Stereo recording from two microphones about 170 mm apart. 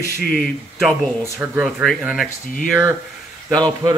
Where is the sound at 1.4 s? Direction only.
10° right (ahead or behind).